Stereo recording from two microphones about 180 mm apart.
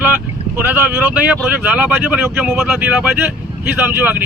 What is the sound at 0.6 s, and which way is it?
Speech, 10° right (ahead or behind).